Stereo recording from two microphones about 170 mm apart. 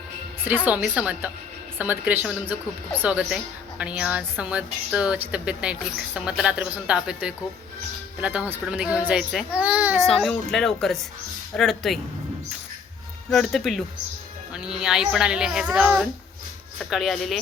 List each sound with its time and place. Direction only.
0.4 s a woman's voice: 10° right (ahead or behind)
10.1 s a child's voice: centre (ahead or behind)
13.3 s a child's voice: centre (ahead or behind)